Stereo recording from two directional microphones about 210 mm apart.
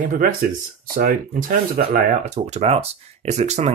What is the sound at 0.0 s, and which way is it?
Speech, 40° right (ahead or behind).